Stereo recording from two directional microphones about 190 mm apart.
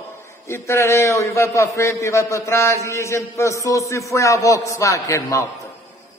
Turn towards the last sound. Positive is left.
turn(degrees=15)  # may be behind; listen again after turning